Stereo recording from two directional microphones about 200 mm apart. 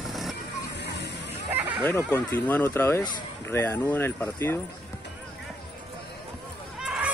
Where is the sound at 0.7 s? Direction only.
60° left (ahead or behind).